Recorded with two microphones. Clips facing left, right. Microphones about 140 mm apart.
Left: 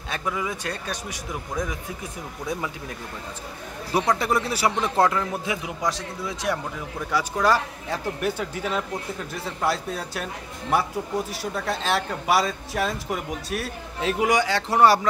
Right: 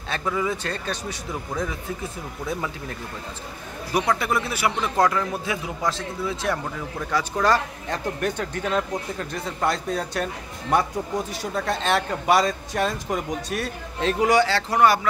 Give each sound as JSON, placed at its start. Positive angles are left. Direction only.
{"t": 0.1, "sound": "a man's voice", "side_deg": 10}
{"t": 4.2, "sound": "a man's voice", "side_deg": 35}
{"t": 5.0, "sound": "a man's voice", "side_deg": 20}
{"t": 14.7, "sound": "a man's voice", "side_deg": 30}